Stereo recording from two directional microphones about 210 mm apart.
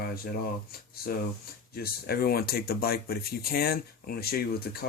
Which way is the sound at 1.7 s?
45° left (ahead or behind).